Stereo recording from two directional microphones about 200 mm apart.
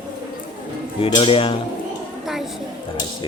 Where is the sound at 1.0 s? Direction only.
25° left (ahead or behind).